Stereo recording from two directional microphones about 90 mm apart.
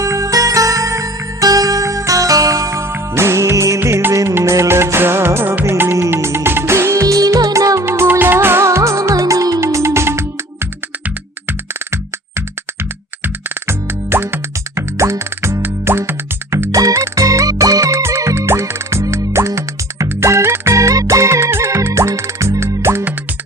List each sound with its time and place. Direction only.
0.0 s music: 35° right (ahead or behind)
7.2 s music: 40° right (ahead or behind)
13.2 s music: 25° right (ahead or behind)